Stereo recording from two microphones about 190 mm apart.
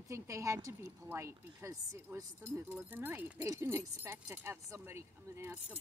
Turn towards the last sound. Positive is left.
turn(degrees=-15)  # may be behind; listen again after turning